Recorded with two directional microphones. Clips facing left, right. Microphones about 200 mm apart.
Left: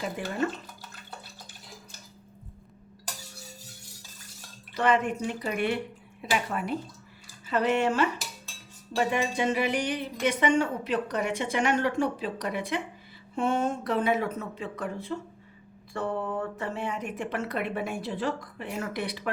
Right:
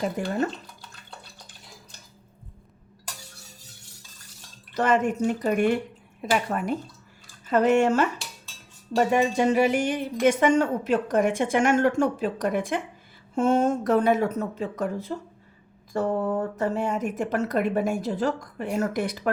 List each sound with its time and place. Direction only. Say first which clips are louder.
0.2 s a woman's voice: right 5 dB; 45° right (ahead or behind)
4.7 s a woman's voice: right 3 dB; 45° right (ahead or behind)